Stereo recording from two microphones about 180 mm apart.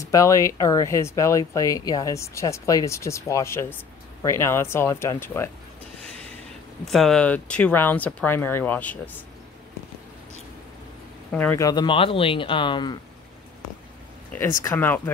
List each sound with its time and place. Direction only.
0.0 s speech: 20° left (ahead or behind)
6.8 s speech: centre (ahead or behind)
11.3 s speech: 15° left (ahead or behind)
14.6 s speech: 10° left (ahead or behind)